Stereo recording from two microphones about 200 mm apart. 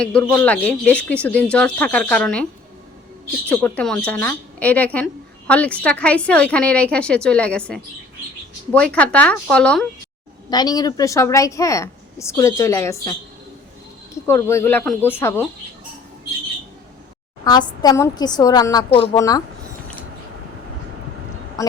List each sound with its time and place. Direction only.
0.0 s a woman's voice: 5° left (ahead or behind)
3.5 s a woman's voice: 10° left (ahead or behind)
10.5 s a woman's voice: 20° left (ahead or behind)
14.3 s a woman's voice: 15° left (ahead or behind)
17.4 s a woman's voice: 20° left (ahead or behind)
21.6 s a sound: 15° left (ahead or behind)